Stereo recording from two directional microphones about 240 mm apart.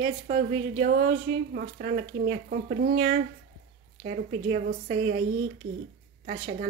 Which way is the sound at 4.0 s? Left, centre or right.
Right.